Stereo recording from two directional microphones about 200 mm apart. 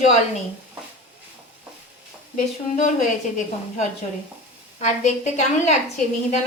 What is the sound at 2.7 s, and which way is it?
A woman's voice, 35° left (ahead or behind).